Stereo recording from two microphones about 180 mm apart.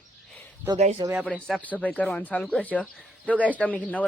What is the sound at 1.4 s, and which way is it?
Speech, 5° left (ahead or behind).